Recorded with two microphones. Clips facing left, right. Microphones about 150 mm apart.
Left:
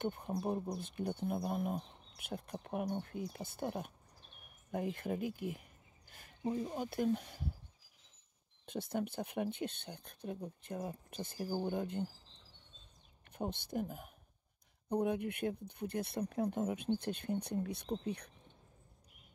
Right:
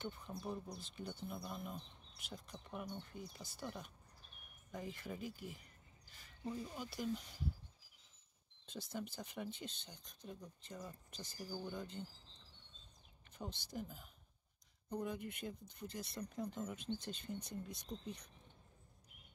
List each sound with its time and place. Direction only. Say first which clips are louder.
0.0 s speech: left 9 dB; 55° left (ahead or behind)
2.6 s speech: left 9 dB; 65° left (ahead or behind)
5.5 s a sound: left 9 dB; 55° left (ahead or behind)
6.6 s speech: left 8 dB; 45° left (ahead or behind)
8.6 s speech: left 8 dB; 60° left (ahead or behind)
13.3 s speech: left 9 dB; 55° left (ahead or behind)